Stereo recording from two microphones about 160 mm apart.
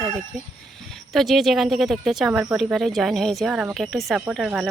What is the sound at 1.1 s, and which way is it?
Speech, centre (ahead or behind).